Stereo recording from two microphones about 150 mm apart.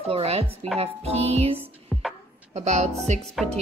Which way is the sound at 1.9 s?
5° left (ahead or behind).